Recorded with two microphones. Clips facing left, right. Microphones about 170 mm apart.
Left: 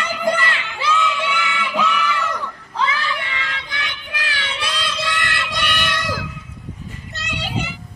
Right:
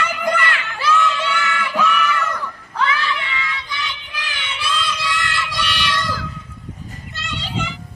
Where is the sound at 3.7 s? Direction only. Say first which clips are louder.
Even; 65° left (ahead or behind).